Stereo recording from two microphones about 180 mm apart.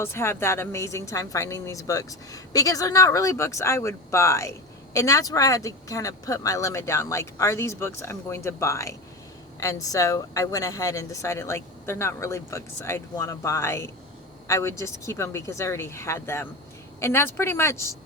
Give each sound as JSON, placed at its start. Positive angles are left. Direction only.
{"t": 0.0, "sound": "a woman's voice", "side_deg": 15}